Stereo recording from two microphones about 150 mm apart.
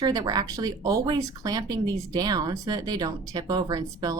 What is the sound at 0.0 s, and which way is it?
Speech, 25° right (ahead or behind).